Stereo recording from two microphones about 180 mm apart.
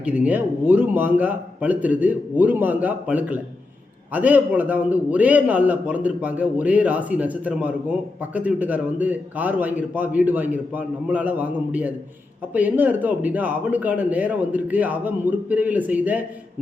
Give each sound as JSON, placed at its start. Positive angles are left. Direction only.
{"t": 0.0, "sound": "a man's voice", "side_deg": -10}